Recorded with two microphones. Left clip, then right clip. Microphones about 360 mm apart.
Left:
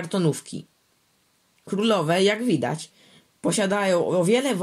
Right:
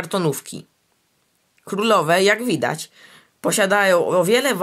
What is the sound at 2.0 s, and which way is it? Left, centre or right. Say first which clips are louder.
Speech: right 5 dB; right.